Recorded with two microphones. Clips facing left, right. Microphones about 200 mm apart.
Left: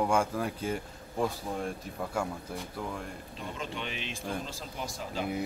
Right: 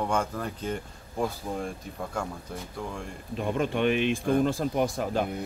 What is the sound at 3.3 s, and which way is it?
Speech, 55° right (ahead or behind).